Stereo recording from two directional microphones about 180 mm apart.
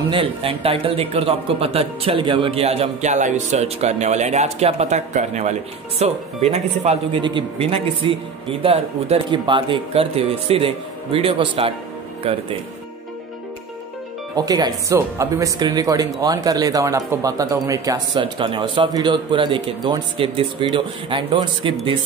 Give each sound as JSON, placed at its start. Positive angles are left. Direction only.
{"t": 0.1, "sound": "speech", "side_deg": -30}
{"t": 14.3, "sound": "a man's voice", "side_deg": -20}